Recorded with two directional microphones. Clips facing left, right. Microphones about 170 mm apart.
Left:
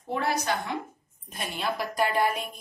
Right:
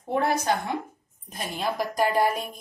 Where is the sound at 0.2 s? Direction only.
50° right (ahead or behind).